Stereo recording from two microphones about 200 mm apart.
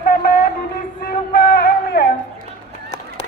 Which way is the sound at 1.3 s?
50° left (ahead or behind).